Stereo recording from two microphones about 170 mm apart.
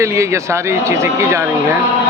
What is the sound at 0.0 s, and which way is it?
Speech, 15° right (ahead or behind).